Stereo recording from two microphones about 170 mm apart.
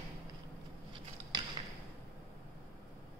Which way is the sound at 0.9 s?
30° right (ahead or behind).